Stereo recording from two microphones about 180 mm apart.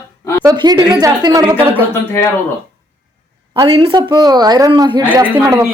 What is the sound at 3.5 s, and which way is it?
Speech, 25° right (ahead or behind).